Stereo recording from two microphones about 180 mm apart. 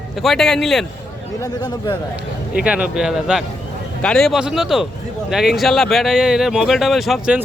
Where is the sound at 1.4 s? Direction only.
25° left (ahead or behind).